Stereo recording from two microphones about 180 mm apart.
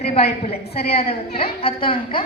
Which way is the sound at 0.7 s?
60° left (ahead or behind).